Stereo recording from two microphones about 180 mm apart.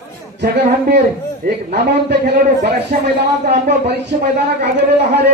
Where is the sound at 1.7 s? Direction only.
70° right (ahead or behind).